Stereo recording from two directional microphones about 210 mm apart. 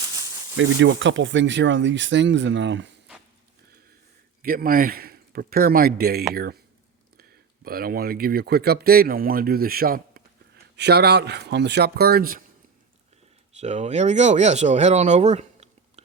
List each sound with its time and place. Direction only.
0.5 s speech: 65° right (ahead or behind)
4.4 s a man's voice: 45° right (ahead or behind)
13.6 s speech: 35° right (ahead or behind)